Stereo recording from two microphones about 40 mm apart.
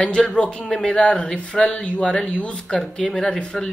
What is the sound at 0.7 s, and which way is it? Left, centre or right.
Speech, centre.